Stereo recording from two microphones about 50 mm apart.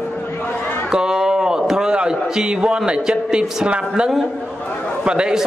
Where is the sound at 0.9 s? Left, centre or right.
Centre.